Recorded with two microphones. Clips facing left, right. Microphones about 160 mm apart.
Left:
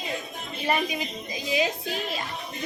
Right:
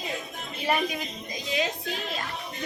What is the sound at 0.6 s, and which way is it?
Speech, centre (ahead or behind).